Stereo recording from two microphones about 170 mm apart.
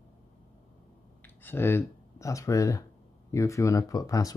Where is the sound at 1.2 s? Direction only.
10° left (ahead or behind).